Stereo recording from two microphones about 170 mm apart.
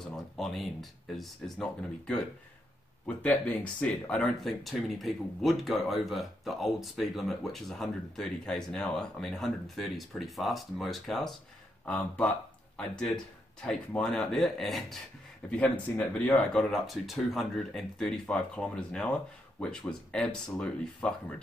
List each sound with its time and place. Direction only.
0.1 s speech: centre (ahead or behind)